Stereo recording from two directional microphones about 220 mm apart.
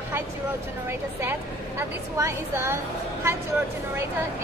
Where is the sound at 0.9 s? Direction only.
10° right (ahead or behind).